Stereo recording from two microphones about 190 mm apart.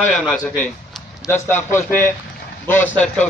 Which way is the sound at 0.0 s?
5° left (ahead or behind).